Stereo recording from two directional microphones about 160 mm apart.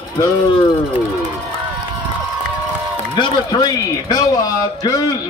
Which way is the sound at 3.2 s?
25° left (ahead or behind).